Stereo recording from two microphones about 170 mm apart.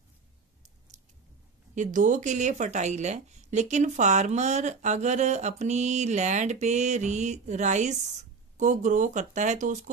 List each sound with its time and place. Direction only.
1.8 s speech: 45° right (ahead or behind)